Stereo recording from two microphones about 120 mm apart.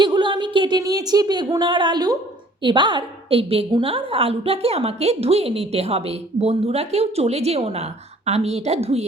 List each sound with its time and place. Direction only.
0.0 s a woman's voice: 40° right (ahead or behind); by 9.0 s 60° right (ahead or behind)